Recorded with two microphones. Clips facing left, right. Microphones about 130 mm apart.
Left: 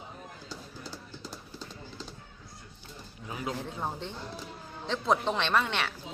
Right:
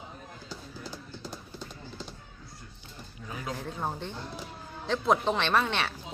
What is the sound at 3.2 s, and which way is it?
Speech, 20° left (ahead or behind).